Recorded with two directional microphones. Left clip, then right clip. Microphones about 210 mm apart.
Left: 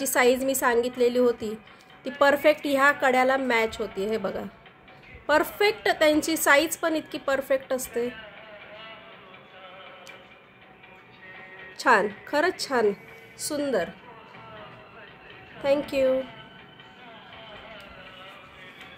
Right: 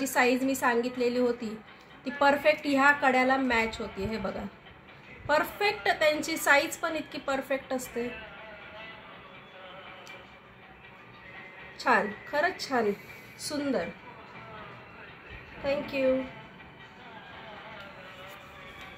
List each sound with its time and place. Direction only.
0.0 s a woman's voice: 55° left (ahead or behind)
11.8 s a woman's voice: 55° left (ahead or behind)
15.6 s a woman's voice: 60° left (ahead or behind)